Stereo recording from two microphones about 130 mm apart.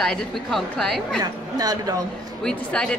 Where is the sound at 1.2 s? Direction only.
30° right (ahead or behind).